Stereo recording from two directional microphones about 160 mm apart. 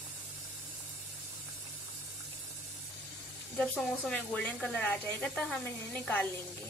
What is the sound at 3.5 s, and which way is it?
Speech, 5° left (ahead or behind).